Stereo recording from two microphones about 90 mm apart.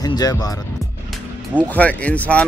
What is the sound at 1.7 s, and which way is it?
Speech, 15° left (ahead or behind).